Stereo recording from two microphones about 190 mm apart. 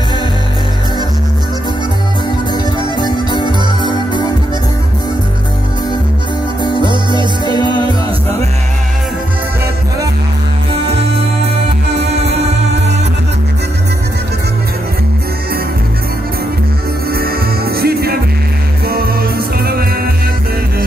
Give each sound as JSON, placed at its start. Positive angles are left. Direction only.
{"t": 2.5, "sound": "music", "side_deg": 20}
{"t": 6.6, "sound": "music", "side_deg": 25}
{"t": 6.9, "sound": "music", "side_deg": -25}
{"t": 10.7, "sound": "music", "side_deg": -30}
{"t": 11.9, "sound": "music", "side_deg": -65}
{"t": 17.1, "sound": "music", "side_deg": -55}